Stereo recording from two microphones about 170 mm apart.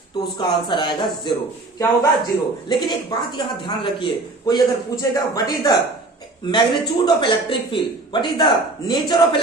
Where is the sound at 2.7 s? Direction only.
25° left (ahead or behind).